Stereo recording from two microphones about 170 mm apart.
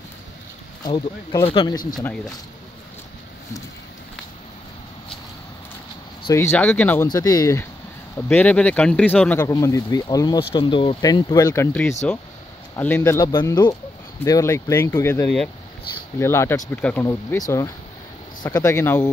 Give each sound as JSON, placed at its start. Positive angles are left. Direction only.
{"t": 0.8, "sound": "speech", "side_deg": 25}
{"t": 6.3, "sound": "speech", "side_deg": 15}
{"t": 7.1, "sound": "speech", "side_deg": 20}
{"t": 8.3, "sound": "speech", "side_deg": 10}
{"t": 15.2, "sound": "speech", "side_deg": 5}
{"t": 16.2, "sound": "speech", "side_deg": 15}